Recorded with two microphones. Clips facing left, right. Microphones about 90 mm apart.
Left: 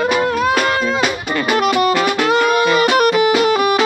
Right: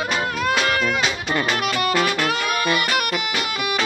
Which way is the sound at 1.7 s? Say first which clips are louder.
Left 6 dB; 15° left (ahead or behind).